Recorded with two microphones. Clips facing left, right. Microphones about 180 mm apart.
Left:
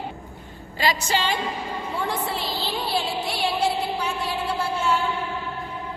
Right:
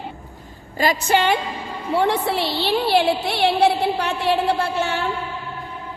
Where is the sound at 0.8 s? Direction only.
55° right (ahead or behind).